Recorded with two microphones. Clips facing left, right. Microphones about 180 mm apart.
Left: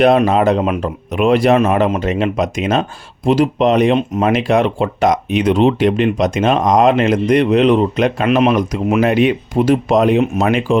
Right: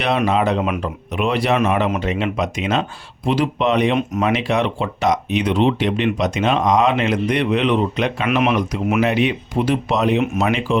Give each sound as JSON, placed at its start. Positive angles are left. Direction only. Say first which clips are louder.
{"t": 0.3, "sound": "speech", "louder": "left 4 dB", "side_deg": 45}
{"t": 8.4, "sound": "speech", "louder": "left 4 dB", "side_deg": 30}
{"t": 9.0, "sound": "speech", "louder": "left 5 dB", "side_deg": 45}